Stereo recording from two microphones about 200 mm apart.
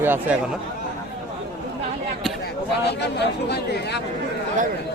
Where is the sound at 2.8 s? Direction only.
60° left (ahead or behind).